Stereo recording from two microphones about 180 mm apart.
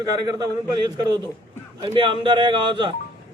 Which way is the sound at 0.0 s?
20° right (ahead or behind).